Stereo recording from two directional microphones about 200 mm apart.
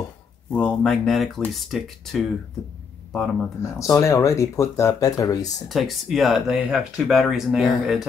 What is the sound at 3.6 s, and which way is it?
Speech, 15° left (ahead or behind).